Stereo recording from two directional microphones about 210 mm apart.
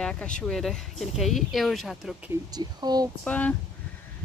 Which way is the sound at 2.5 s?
20° right (ahead or behind).